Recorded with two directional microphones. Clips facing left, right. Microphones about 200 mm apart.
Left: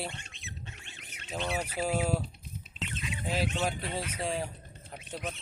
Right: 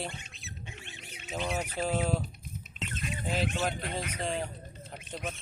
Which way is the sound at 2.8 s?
45° right (ahead or behind).